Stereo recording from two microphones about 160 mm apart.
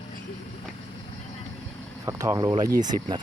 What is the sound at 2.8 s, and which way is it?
Speech, 50° right (ahead or behind).